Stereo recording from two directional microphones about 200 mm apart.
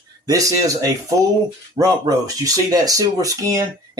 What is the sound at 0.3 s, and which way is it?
Speech, 15° right (ahead or behind).